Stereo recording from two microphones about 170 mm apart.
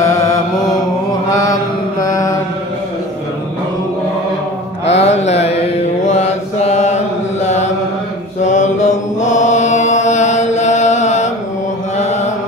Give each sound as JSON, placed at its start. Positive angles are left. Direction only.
{"t": 0.0, "sound": "mantra", "side_deg": 15}
{"t": 4.9, "sound": "mantra", "side_deg": 40}
{"t": 12.0, "sound": "chant", "side_deg": 40}